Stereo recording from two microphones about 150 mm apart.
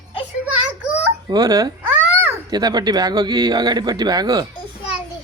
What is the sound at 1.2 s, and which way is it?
Speech, 25° right (ahead or behind).